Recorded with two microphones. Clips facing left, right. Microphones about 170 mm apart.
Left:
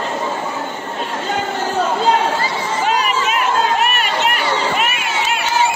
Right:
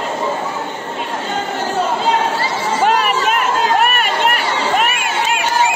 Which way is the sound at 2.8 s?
55° right (ahead or behind).